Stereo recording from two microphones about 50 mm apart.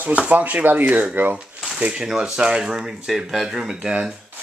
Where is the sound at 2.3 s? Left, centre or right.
Centre.